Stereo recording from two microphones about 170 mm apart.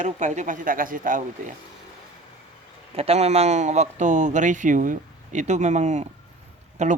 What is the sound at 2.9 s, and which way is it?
Speech, 35° right (ahead or behind).